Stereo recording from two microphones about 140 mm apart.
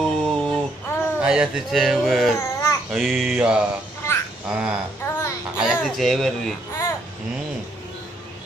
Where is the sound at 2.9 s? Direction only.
Centre (ahead or behind).